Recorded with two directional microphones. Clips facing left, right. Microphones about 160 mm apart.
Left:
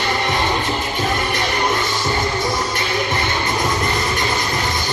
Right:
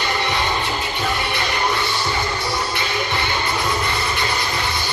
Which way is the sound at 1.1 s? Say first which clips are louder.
Left 3 dB; 45° left (ahead or behind).